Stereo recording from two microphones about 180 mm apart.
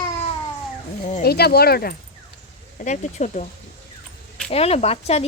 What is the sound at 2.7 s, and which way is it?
Speech, 40° left (ahead or behind).